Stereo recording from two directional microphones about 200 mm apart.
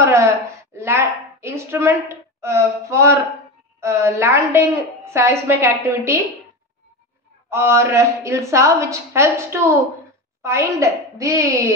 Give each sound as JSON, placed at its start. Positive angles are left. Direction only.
{"t": 0.0, "sound": "a woman's voice", "side_deg": -15}
{"t": 7.4, "sound": "a woman's voice", "side_deg": -15}